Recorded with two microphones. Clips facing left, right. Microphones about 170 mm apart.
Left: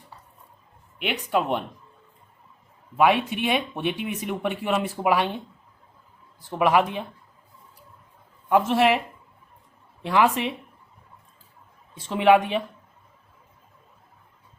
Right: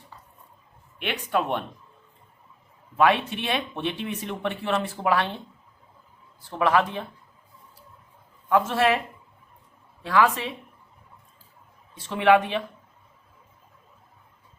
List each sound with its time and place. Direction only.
1.0 s speech: 10° left (ahead or behind)
3.0 s speech: 10° left (ahead or behind)
6.4 s speech: 15° left (ahead or behind)
8.4 s speech: 15° left (ahead or behind)
10.0 s speech: 20° left (ahead or behind)
12.0 s speech: 20° left (ahead or behind)